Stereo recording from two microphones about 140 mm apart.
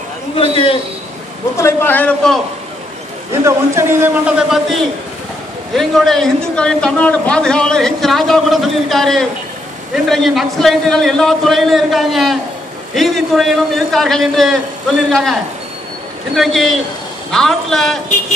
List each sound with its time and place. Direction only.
0.4 s a man's voice: 40° left (ahead or behind)
1.6 s a man's voice: 15° left (ahead or behind)
3.4 s a man's voice: 20° right (ahead or behind); by 15.3 s centre (ahead or behind)
16.3 s a man's voice: centre (ahead or behind)